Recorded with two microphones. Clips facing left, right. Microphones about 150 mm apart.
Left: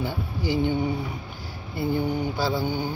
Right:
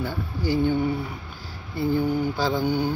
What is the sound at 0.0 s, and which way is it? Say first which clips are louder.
Speech: right 1 dB; 15° left (ahead or behind).